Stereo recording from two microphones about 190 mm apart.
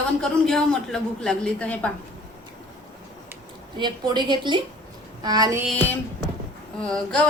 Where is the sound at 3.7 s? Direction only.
25° right (ahead or behind).